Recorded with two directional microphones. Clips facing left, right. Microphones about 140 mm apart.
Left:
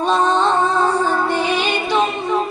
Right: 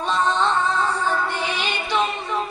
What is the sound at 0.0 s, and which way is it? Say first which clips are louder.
Music: left 5 dB; 45° left (ahead or behind).